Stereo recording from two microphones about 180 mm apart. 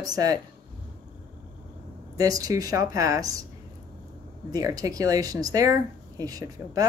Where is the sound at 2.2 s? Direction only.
20° right (ahead or behind).